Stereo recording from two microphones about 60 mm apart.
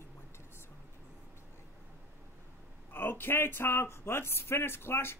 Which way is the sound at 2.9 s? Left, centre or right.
Left.